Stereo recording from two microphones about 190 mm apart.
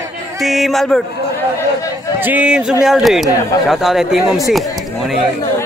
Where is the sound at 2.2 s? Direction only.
10° right (ahead or behind).